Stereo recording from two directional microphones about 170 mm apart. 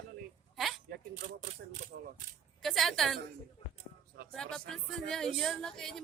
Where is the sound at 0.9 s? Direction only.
45° right (ahead or behind).